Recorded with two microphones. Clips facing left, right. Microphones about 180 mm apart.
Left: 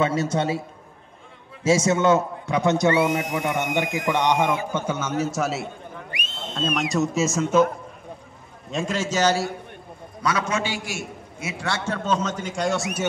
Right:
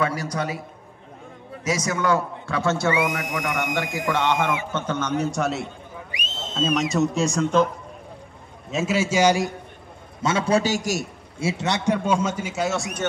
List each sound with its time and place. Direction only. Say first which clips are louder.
0.0 s a man's voice: left 3 dB; 25° left (ahead or behind)
1.6 s a man's voice: left 6 dB; 25° left (ahead or behind); by 5.7 s centre (ahead or behind)
6.1 s a sound: even; 60° left (ahead or behind)
6.5 s speech: right 2 dB; centre (ahead or behind)
8.6 s a man's voice: right 3 dB; 5° right (ahead or behind)
10.2 s a man's voice: right 4 dB; 30° right (ahead or behind)
11.3 s a man's voice: right 5 dB; 25° right (ahead or behind); by 13.0 s centre (ahead or behind)